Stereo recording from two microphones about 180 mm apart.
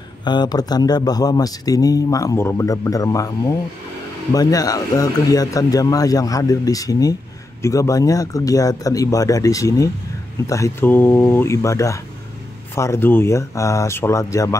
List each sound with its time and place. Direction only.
0.2 s a man's voice: 25° left (ahead or behind)